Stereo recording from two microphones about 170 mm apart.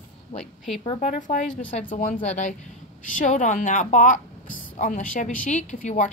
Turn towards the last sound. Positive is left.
turn(degrees=45)  # may be behind; listen again after turning